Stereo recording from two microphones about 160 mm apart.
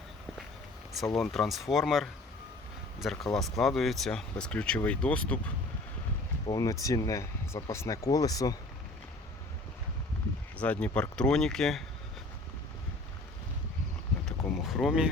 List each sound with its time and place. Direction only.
1.1 s speech: centre (ahead or behind)
6.5 s speech: 20° left (ahead or behind)
10.6 s speech: 10° left (ahead or behind)
14.3 s vehicle: centre (ahead or behind)